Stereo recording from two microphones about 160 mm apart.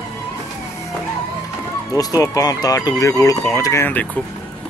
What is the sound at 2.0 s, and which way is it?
Speech, 20° left (ahead or behind).